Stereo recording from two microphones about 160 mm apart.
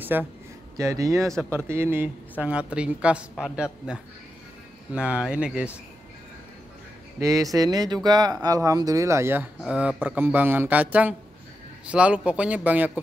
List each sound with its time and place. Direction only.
0.0 s speech: 10° right (ahead or behind)
4.9 s speech: 5° right (ahead or behind)
7.2 s speech: 20° right (ahead or behind)